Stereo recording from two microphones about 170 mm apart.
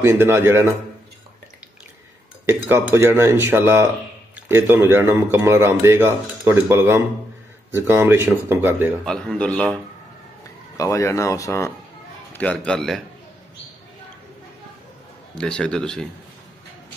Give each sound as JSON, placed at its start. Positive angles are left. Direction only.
{"t": 0.0, "sound": "speech", "side_deg": -15}
{"t": 2.4, "sound": "speech", "side_deg": -15}
{"t": 9.0, "sound": "a man's voice", "side_deg": 5}
{"t": 10.8, "sound": "a man's voice", "side_deg": 15}
{"t": 15.3, "sound": "a man's voice", "side_deg": 5}